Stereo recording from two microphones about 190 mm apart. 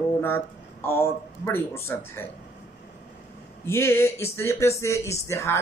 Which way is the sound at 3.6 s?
15° left (ahead or behind).